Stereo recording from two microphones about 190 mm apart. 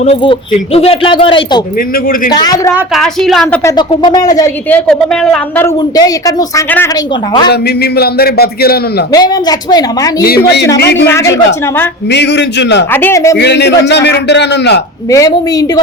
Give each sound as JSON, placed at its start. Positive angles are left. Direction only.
{"t": 0.0, "sound": "speech", "side_deg": 30}
{"t": 2.7, "sound": "a woman's voice", "side_deg": 0}
{"t": 3.6, "sound": "speech", "side_deg": 20}
{"t": 4.9, "sound": "speech", "side_deg": 5}
{"t": 7.5, "sound": "speech", "side_deg": 55}
{"t": 9.1, "sound": "speech", "side_deg": 20}
{"t": 10.2, "sound": "speech", "side_deg": 55}
{"t": 11.0, "sound": "speech", "side_deg": 15}
{"t": 12.1, "sound": "speech", "side_deg": 65}
{"t": 12.9, "sound": "speech", "side_deg": 10}
{"t": 13.3, "sound": "speech", "side_deg": 65}
{"t": 15.1, "sound": "speech", "side_deg": 20}